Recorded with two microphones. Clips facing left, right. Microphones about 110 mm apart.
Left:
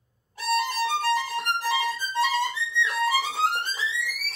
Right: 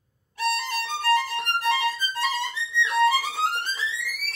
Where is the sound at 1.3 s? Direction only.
Centre (ahead or behind).